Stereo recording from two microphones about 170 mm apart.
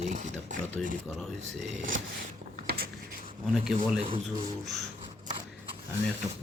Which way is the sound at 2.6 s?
65° right (ahead or behind).